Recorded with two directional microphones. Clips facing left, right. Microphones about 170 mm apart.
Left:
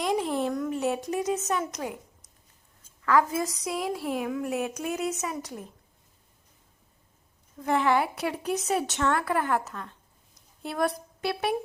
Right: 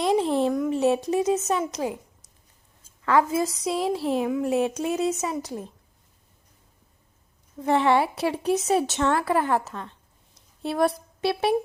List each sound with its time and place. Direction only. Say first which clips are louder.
0.0 s a sound: right 5 dB; 25° right (ahead or behind)
3.1 s a woman's voice: right 3 dB; 25° right (ahead or behind)
7.6 s a woman's voice: right 4 dB; 25° right (ahead or behind)